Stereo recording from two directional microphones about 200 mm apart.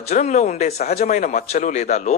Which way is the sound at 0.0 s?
35° left (ahead or behind).